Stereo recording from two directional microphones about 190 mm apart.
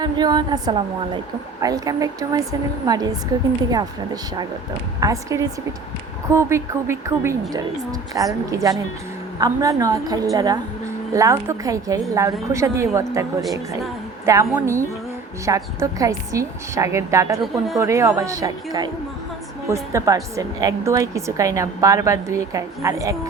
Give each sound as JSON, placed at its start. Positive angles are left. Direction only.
{"t": 0.0, "sound": "a woman's voice", "side_deg": -20}
{"t": 14.3, "sound": "a woman's voice", "side_deg": -15}